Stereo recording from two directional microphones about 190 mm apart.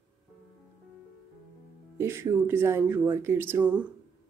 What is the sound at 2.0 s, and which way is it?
A woman's voice, 15° right (ahead or behind).